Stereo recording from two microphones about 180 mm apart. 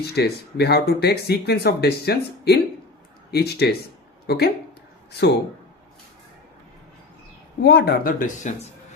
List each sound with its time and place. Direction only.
0.0 s speech: 65° left (ahead or behind)
7.6 s speech: 65° left (ahead or behind)